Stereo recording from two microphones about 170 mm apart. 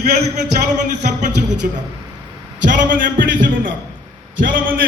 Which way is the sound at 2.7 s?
50° right (ahead or behind).